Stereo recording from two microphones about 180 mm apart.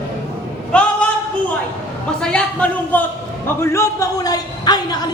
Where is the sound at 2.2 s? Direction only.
5° left (ahead or behind).